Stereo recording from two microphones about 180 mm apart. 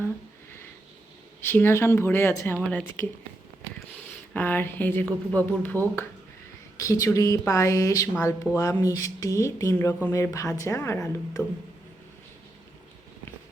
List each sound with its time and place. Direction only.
1.4 s speech: 10° left (ahead or behind)
4.4 s a woman's voice: 10° left (ahead or behind)